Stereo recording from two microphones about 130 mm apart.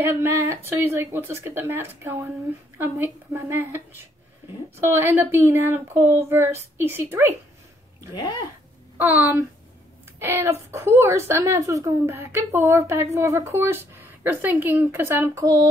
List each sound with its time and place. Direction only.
0.0 s a woman's voice: 20° right (ahead or behind)
8.1 s speech: 35° left (ahead or behind)
8.9 s a woman's voice: 15° right (ahead or behind)